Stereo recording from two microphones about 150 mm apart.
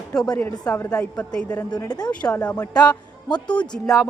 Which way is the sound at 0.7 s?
20° left (ahead or behind).